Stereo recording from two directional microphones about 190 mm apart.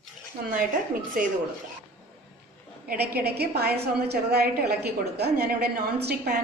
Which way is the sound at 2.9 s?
55° right (ahead or behind).